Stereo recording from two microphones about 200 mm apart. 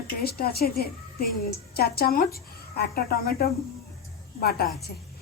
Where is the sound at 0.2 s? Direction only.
50° left (ahead or behind).